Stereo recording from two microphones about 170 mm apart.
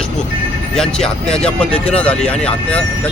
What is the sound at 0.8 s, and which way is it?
Speech, 5° left (ahead or behind).